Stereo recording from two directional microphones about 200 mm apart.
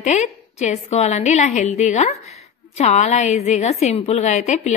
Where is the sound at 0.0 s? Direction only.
35° left (ahead or behind).